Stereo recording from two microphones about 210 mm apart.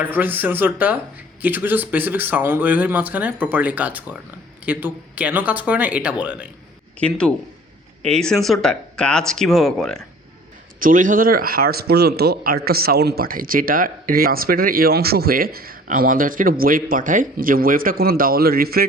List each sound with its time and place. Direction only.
0.0 s speech: 10° right (ahead or behind)
7.0 s speech: 5° left (ahead or behind)
10.8 s a man's voice: 40° right (ahead or behind)